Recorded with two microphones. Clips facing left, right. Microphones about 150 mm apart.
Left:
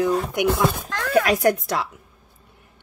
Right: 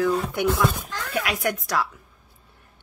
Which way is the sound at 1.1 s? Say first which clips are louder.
Left 8 dB; 40° left (ahead or behind).